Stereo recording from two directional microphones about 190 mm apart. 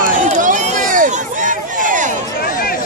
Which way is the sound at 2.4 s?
50° left (ahead or behind).